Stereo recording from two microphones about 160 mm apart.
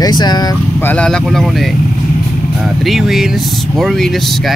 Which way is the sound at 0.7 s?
10° left (ahead or behind).